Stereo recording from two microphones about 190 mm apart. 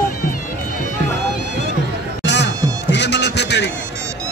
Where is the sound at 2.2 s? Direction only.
65° left (ahead or behind).